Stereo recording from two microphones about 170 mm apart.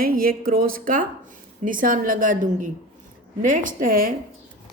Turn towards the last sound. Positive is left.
turn(degrees=-55)  # may be behind; listen again after turning